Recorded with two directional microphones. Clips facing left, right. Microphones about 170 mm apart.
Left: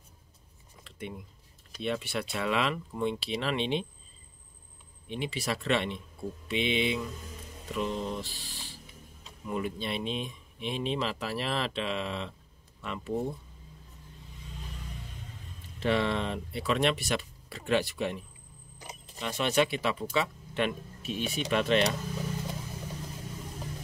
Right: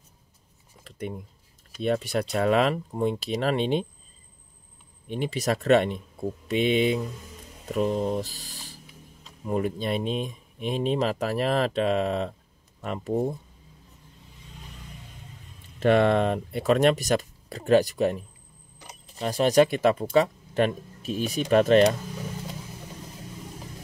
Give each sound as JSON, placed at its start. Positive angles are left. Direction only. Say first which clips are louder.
{"t": 0.8, "sound": "a sound", "louder": "right 6 dB", "side_deg": -40}
{"t": 1.8, "sound": "speech", "louder": "right 7 dB", "side_deg": -40}
{"t": 5.0, "sound": "speech", "louder": "right 6 dB", "side_deg": -45}
{"t": 15.8, "sound": "speech", "louder": "right 8 dB", "side_deg": -50}